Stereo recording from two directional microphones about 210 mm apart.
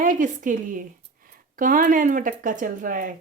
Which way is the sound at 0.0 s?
40° right (ahead or behind).